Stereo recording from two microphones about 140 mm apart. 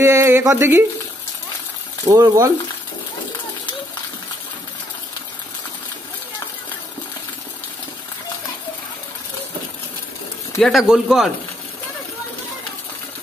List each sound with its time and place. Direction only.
0.0 s speech: 20° right (ahead or behind)
2.0 s speech: 25° right (ahead or behind)
10.6 s speech: 5° right (ahead or behind)